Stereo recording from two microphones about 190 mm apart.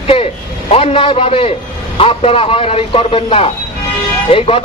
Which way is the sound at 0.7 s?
30° left (ahead or behind).